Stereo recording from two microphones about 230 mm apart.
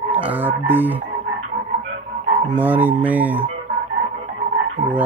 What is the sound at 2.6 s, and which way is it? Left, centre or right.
Speech, centre.